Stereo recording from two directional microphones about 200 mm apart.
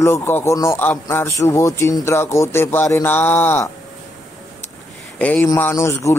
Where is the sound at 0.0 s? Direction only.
10° left (ahead or behind).